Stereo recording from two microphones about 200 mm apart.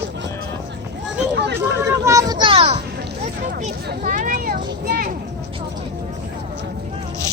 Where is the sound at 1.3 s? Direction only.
60° right (ahead or behind).